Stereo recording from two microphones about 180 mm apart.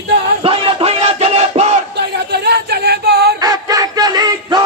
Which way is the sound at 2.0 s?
65° right (ahead or behind).